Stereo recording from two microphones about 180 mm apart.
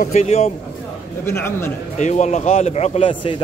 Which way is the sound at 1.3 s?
15° left (ahead or behind).